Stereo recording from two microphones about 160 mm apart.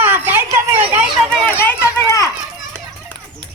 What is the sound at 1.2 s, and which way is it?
Run, 5° left (ahead or behind).